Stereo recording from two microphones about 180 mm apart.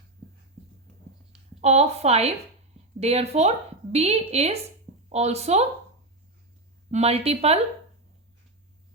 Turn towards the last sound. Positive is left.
turn(degrees=-35)  # may be behind; listen again after turning